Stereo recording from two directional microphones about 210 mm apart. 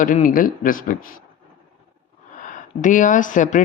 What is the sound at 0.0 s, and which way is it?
Speech, 40° left (ahead or behind).